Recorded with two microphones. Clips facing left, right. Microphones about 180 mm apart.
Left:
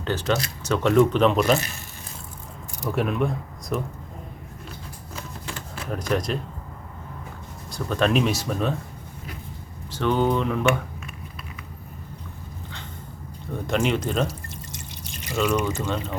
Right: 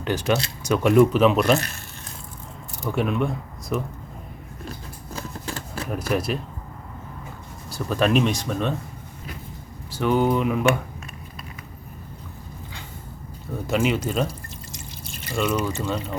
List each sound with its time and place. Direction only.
0.0 s speech: 15° right (ahead or behind)
2.9 s speech: centre (ahead or behind)
5.1 s a sound: 35° right (ahead or behind)
5.9 s speech: 5° right (ahead or behind)
7.7 s speech: 5° right (ahead or behind)
9.9 s speech: 10° right (ahead or behind)
13.5 s speech: 5° right (ahead or behind)
15.3 s speech: 10° left (ahead or behind)
15.6 s speech: centre (ahead or behind)